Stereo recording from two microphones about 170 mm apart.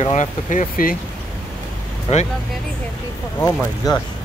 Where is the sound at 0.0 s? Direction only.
45° left (ahead or behind).